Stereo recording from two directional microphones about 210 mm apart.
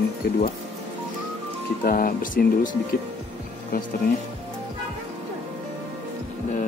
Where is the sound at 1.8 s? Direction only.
40° left (ahead or behind).